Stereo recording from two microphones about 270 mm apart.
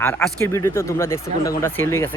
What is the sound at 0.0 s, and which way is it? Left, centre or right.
Speech, centre.